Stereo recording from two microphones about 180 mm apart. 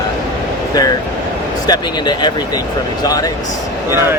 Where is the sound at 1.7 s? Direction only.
25° left (ahead or behind).